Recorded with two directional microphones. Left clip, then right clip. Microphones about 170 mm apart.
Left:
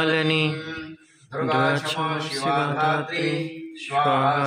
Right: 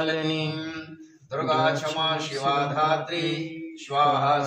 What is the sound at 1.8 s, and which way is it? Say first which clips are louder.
Mantra: even; 20° left (ahead or behind).